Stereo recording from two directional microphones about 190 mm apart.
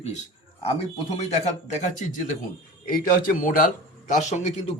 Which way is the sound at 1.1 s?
35° left (ahead or behind).